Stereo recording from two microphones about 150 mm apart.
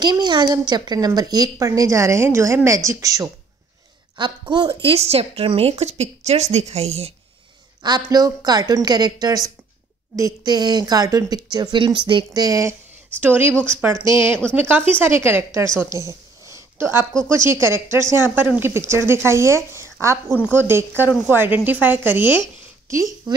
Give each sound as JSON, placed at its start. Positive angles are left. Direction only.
{"t": 0.0, "sound": "a woman's voice", "side_deg": -30}
{"t": 4.8, "sound": "a woman's voice", "side_deg": -40}
{"t": 7.8, "sound": "a woman's voice", "side_deg": -25}
{"t": 15.8, "sound": "a sound", "side_deg": -20}
{"t": 17.5, "sound": "a woman's voice", "side_deg": -15}
{"t": 23.3, "sound": "a sound", "side_deg": -25}